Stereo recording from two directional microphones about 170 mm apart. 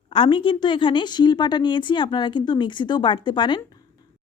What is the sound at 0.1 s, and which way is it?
Speech, 30° left (ahead or behind).